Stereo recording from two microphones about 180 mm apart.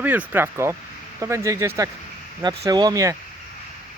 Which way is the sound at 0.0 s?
10° right (ahead or behind).